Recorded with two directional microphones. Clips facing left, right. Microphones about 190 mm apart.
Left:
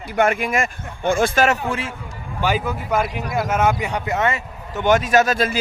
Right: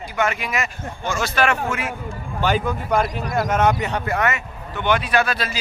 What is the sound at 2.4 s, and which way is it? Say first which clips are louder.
Speech: right 1 dB; 5° left (ahead or behind).